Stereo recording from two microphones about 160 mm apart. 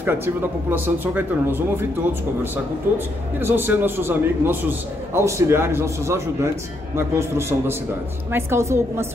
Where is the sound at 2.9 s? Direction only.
15° right (ahead or behind).